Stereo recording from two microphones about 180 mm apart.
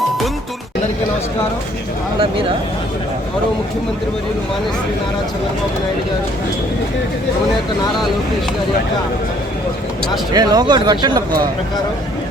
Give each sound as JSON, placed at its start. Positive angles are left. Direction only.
{"t": 10.3, "sound": "speech", "side_deg": -20}